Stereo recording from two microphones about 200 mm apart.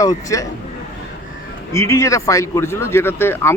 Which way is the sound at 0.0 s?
15° left (ahead or behind).